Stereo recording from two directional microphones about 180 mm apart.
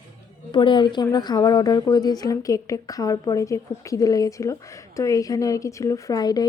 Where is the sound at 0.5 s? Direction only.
25° left (ahead or behind).